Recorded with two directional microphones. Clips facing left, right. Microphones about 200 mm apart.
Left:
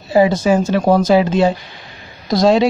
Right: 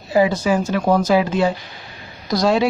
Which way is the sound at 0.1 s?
25° left (ahead or behind).